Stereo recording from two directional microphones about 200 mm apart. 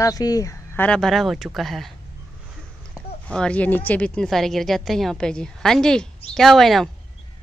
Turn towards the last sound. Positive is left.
turn(degrees=0)  # may be behind; listen again after turning